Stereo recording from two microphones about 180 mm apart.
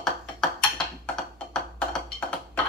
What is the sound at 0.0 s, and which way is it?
Music, 5° left (ahead or behind).